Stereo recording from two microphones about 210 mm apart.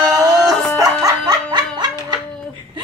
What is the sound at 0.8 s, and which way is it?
Music, 15° right (ahead or behind).